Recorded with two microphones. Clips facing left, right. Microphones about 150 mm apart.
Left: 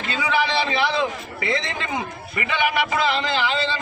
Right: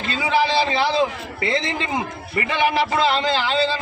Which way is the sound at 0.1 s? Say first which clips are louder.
Right 3 dB; 35° right (ahead or behind).